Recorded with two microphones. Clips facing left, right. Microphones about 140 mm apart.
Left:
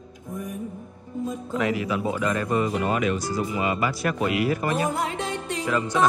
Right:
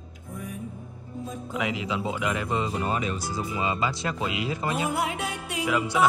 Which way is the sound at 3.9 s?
20° right (ahead or behind).